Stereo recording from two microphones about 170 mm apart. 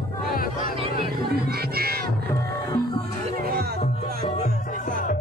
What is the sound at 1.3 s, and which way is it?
Music, 65° right (ahead or behind).